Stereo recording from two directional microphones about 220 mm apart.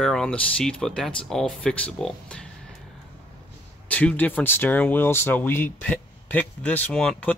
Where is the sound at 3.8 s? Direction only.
5° left (ahead or behind).